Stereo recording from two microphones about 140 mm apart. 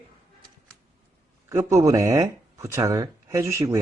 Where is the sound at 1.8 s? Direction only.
25° right (ahead or behind).